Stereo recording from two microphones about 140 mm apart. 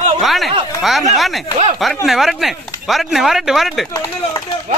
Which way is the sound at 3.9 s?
25° left (ahead or behind).